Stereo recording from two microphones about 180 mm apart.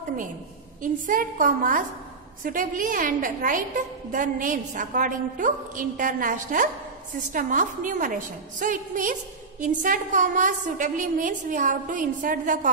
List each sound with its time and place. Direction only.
1.0 s a woman's voice: 50° right (ahead or behind)